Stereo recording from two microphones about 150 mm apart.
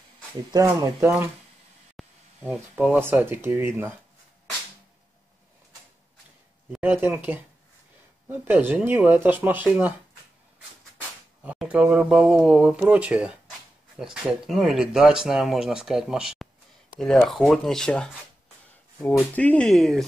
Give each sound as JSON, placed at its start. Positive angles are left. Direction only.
{"t": 0.5, "sound": "speech", "side_deg": -20}
{"t": 2.0, "sound": "a sound", "side_deg": 0}
{"t": 2.4, "sound": "speech", "side_deg": -10}
{"t": 6.7, "sound": "speech", "side_deg": -15}
{"t": 11.4, "sound": "speech", "side_deg": -10}
{"t": 19.1, "sound": "speech", "side_deg": 10}